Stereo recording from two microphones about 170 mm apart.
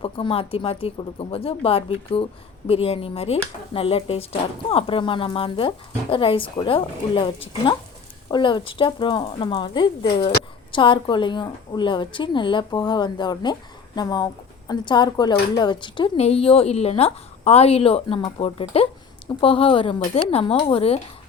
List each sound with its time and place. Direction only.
0.0 s speech: 35° left (ahead or behind)